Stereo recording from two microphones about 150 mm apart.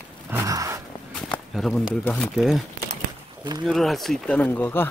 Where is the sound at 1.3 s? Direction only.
5° left (ahead or behind).